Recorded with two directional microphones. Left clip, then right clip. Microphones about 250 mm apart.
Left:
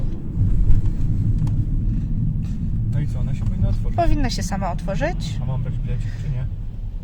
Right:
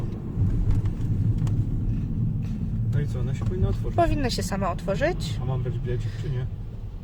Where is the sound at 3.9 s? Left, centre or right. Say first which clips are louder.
Left 1 dB; centre.